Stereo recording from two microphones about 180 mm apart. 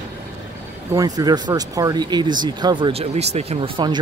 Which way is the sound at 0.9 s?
20° right (ahead or behind).